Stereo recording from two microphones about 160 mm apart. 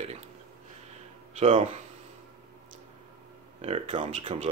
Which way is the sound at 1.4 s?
40° right (ahead or behind).